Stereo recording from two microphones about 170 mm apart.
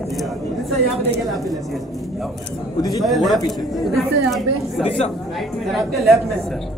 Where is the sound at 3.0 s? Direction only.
Centre (ahead or behind).